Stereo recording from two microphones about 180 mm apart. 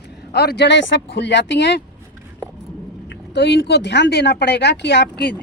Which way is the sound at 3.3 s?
75° left (ahead or behind).